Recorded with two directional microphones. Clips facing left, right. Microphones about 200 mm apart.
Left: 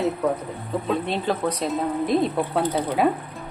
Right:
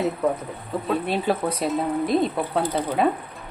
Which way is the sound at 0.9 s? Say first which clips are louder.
Right 2 dB; 10° right (ahead or behind).